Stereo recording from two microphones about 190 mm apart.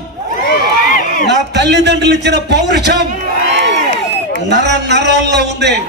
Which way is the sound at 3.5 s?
65° right (ahead or behind).